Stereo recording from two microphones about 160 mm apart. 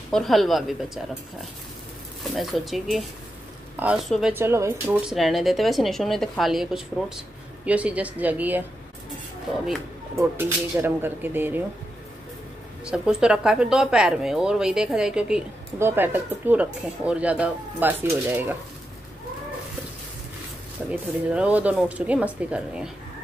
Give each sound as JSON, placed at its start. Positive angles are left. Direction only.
{"t": 0.1, "sound": "a woman's voice", "side_deg": 0}
{"t": 2.2, "sound": "a woman's voice", "side_deg": 0}
{"t": 5.0, "sound": "a woman's voice", "side_deg": 0}
{"t": 10.1, "sound": "speech", "side_deg": -15}
{"t": 12.8, "sound": "a woman's voice", "side_deg": -5}
{"t": 20.9, "sound": "speech", "side_deg": -10}